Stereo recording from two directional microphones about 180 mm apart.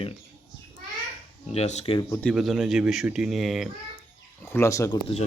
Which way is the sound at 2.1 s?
5° left (ahead or behind).